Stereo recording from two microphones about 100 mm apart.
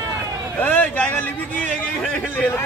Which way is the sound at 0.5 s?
15° left (ahead or behind).